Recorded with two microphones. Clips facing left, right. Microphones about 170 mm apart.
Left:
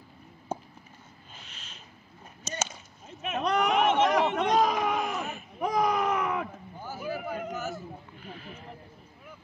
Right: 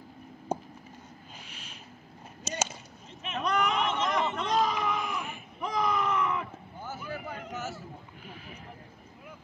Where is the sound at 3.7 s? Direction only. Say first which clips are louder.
Left 6 dB; 55° left (ahead or behind).